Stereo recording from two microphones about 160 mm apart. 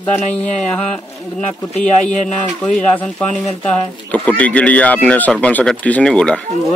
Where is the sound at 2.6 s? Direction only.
5° left (ahead or behind).